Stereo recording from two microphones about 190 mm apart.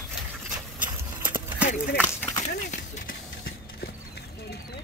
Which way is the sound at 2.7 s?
45° left (ahead or behind).